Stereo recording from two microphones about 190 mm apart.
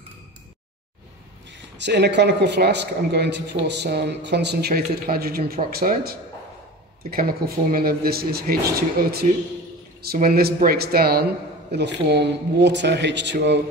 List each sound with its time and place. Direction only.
1.8 s a man's voice: 65° right (ahead or behind)